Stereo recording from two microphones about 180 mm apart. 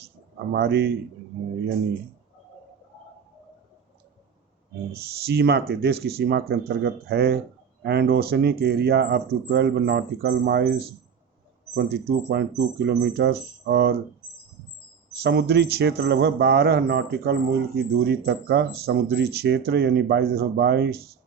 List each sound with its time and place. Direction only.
0.5 s a man's voice: 70° right (ahead or behind)
4.9 s speech: 60° right (ahead or behind)
15.2 s speech: 65° right (ahead or behind)